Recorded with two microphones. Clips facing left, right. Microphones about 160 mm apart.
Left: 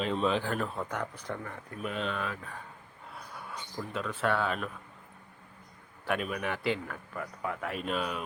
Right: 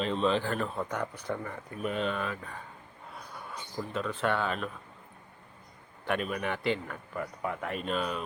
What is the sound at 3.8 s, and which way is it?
Speech, 5° right (ahead or behind).